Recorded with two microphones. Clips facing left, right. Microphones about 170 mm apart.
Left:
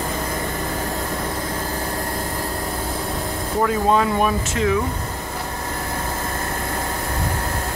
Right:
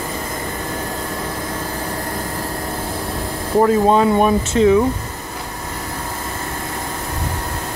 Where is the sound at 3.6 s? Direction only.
30° right (ahead or behind).